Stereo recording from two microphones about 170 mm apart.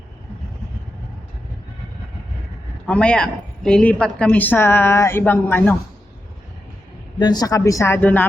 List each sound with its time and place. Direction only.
2.8 s a woman's voice: 5° left (ahead or behind)
7.2 s a woman's voice: 25° left (ahead or behind)